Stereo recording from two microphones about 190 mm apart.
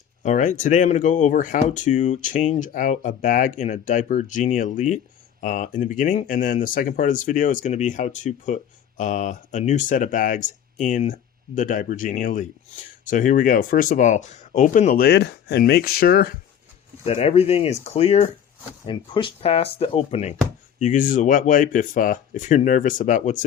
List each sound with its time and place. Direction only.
0.2 s speech: 40° left (ahead or behind)
17.1 s speech: 30° left (ahead or behind)